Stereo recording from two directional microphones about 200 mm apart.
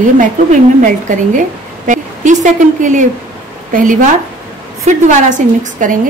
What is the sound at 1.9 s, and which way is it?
A woman's voice, 40° right (ahead or behind).